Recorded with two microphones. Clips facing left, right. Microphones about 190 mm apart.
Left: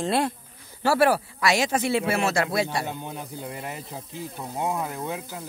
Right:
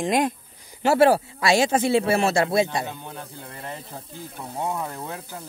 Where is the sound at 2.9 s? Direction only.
15° left (ahead or behind).